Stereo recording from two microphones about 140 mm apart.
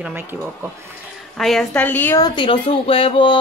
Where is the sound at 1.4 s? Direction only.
Centre (ahead or behind).